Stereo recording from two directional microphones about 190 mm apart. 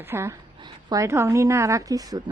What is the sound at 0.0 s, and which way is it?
A woman's voice, 15° right (ahead or behind).